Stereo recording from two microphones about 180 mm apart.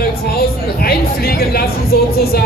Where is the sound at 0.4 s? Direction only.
60° left (ahead or behind).